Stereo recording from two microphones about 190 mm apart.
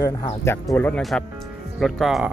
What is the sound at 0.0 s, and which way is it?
Speech, 25° left (ahead or behind).